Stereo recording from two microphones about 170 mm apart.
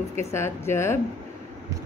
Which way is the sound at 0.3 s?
15° left (ahead or behind).